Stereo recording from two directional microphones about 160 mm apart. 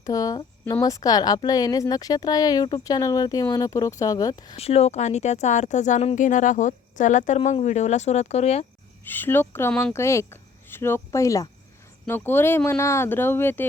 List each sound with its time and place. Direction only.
0.0 s speech: 20° left (ahead or behind)
4.5 s speech: 40° left (ahead or behind)
9.0 s speech: 10° left (ahead or behind)